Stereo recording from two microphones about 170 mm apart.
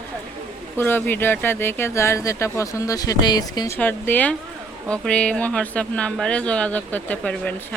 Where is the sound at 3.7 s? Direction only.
10° left (ahead or behind).